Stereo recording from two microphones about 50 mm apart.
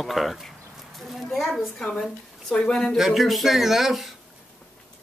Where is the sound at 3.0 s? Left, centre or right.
Centre.